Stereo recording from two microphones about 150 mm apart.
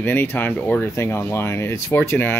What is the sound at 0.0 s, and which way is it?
Speech, 15° left (ahead or behind).